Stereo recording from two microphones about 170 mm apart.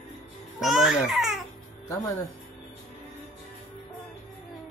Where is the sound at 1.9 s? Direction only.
15° left (ahead or behind).